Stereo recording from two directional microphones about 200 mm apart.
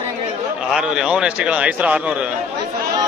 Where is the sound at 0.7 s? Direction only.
5° right (ahead or behind).